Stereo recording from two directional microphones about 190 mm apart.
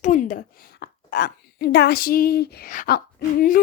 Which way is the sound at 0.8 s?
55° left (ahead or behind).